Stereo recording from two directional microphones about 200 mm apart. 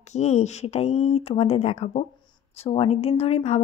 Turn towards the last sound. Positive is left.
turn(degrees=30)  # may be behind; listen again after turning